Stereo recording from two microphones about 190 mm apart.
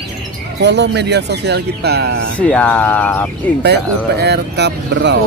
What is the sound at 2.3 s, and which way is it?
Speech, 5° left (ahead or behind).